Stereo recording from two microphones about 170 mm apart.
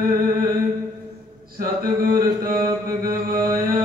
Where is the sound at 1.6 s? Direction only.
55° right (ahead or behind).